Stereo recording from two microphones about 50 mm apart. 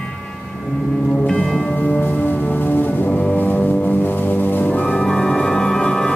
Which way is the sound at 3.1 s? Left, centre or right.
Left.